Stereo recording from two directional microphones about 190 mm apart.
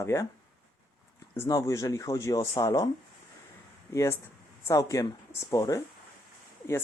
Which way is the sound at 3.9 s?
15° left (ahead or behind).